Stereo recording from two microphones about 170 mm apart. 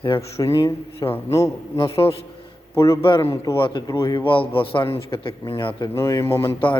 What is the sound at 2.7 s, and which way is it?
Speech, 15° left (ahead or behind).